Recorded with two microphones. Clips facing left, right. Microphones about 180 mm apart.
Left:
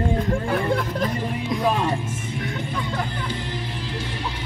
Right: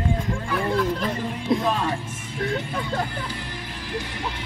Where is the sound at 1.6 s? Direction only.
15° left (ahead or behind).